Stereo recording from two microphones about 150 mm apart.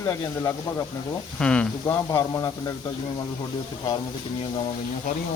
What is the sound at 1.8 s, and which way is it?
Speech, 20° left (ahead or behind).